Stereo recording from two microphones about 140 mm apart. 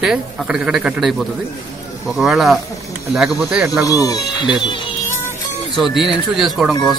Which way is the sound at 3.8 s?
25° left (ahead or behind).